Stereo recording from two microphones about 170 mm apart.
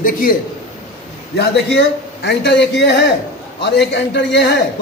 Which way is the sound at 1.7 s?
80° left.